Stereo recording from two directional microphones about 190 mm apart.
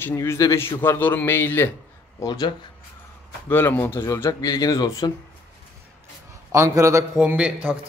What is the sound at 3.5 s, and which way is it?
A man's voice, 10° left (ahead or behind).